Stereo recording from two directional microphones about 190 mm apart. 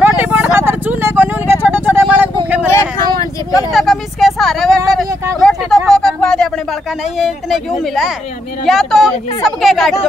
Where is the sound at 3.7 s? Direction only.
Centre (ahead or behind).